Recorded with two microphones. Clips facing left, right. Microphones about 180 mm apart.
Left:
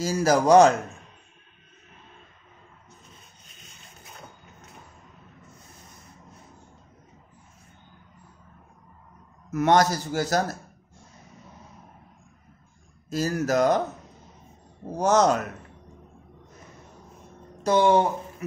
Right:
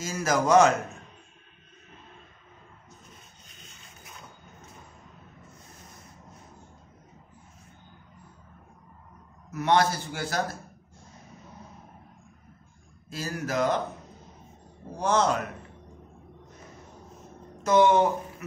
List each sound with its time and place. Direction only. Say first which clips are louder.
0.0 s a man's voice: left 5 dB; 35° left (ahead or behind)
9.5 s a man's voice: left 3 dB; 45° left (ahead or behind)
13.1 s a man's voice: left 7 dB; 40° left (ahead or behind)
14.9 s speech: left 4 dB; 45° left (ahead or behind)
17.6 s a man's voice: left 1 dB; 30° left (ahead or behind)